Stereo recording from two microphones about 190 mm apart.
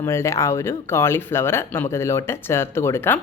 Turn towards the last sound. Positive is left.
turn(degrees=15)  # may be behind; listen again after turning